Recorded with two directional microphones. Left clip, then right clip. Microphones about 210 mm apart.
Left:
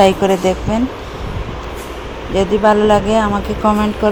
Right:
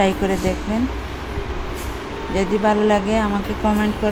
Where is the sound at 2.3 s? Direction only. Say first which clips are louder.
Left 6 dB; 20° left (ahead or behind).